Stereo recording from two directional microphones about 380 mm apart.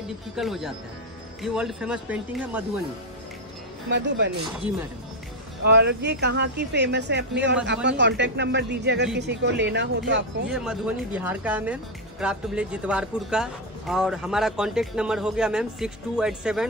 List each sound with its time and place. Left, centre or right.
0.4 s speech: centre
3.9 s speech: right
5.7 s speech: right
10.5 s speech: centre